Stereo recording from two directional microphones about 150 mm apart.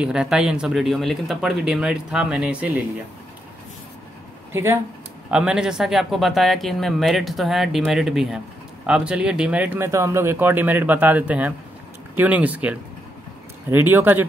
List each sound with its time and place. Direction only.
0.0 s speech: 5° right (ahead or behind)
4.5 s speech: 15° right (ahead or behind)
5.3 s speech: 5° right (ahead or behind)